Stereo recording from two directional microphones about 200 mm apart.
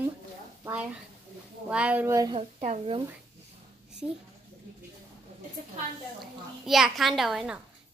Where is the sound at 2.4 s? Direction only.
35° right (ahead or behind).